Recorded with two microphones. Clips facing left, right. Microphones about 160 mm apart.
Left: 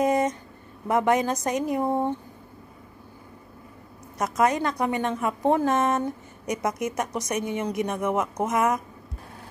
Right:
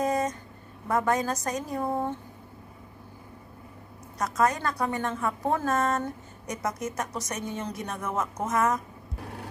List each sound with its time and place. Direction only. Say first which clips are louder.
0.0 s a sound: left 4 dB; 20° left (ahead or behind)
0.8 s a woman's voice: left 4 dB; 20° left (ahead or behind)
4.2 s a woman's voice: left 3 dB; 20° left (ahead or behind)